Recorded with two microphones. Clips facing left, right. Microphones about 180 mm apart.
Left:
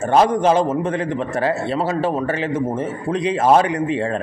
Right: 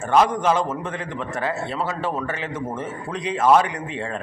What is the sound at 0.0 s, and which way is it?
Speech, 40° left (ahead or behind).